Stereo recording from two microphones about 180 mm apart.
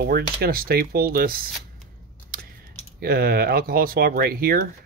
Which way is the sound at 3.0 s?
55° right (ahead or behind).